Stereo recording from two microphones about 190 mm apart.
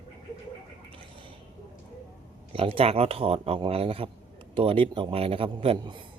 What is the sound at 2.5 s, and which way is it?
A man's voice, 30° right (ahead or behind).